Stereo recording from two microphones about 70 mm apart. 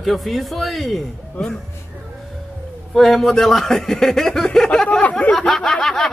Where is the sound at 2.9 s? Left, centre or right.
Centre.